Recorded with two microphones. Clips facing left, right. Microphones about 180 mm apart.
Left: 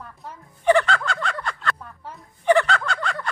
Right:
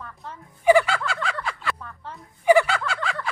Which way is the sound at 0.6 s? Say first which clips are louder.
Right 1 dB; 10° right (ahead or behind).